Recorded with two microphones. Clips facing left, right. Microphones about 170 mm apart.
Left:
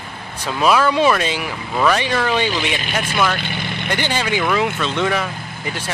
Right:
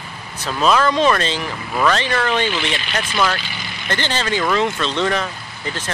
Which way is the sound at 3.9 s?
10° left (ahead or behind).